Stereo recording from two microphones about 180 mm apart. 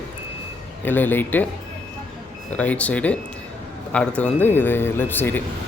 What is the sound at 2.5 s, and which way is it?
Speech, 10° left (ahead or behind).